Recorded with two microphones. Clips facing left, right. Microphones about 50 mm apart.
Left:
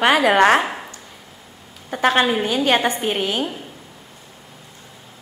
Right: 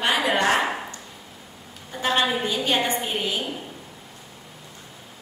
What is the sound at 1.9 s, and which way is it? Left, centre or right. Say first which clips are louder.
A woman's voice: left 6 dB; left.